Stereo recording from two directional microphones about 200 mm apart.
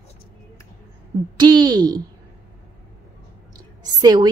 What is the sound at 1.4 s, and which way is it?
Speech, 20° right (ahead or behind).